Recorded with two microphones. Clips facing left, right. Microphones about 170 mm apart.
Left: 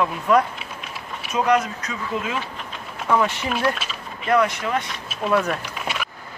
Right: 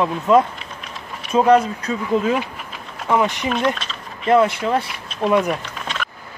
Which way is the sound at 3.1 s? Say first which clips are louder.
Right 2 dB; 15° right (ahead or behind).